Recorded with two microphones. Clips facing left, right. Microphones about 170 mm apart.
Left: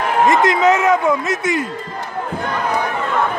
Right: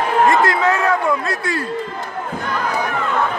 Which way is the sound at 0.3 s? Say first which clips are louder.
Left 2 dB; 20° left (ahead or behind).